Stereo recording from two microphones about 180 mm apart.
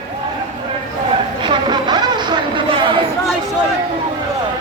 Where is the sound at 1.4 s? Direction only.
25° right (ahead or behind).